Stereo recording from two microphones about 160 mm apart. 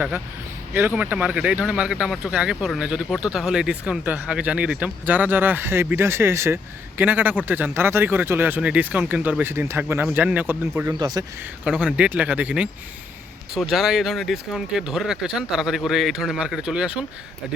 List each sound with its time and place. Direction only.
0.7 s speech: 10° right (ahead or behind)
11.0 s speech: 25° right (ahead or behind)
11.6 s speech: 5° right (ahead or behind)